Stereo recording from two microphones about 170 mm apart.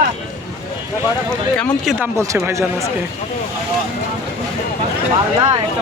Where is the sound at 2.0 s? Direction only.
15° right (ahead or behind).